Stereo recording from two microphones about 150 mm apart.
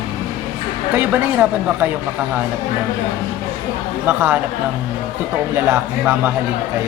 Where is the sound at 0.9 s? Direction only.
10° right (ahead or behind).